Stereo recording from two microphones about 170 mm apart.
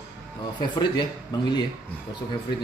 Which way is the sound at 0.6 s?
25° left (ahead or behind).